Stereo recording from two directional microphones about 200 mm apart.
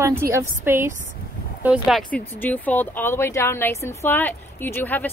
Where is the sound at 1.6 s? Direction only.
Centre (ahead or behind).